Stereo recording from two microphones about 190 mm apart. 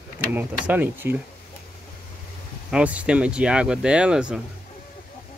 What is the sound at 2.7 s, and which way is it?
Speech, 5° right (ahead or behind).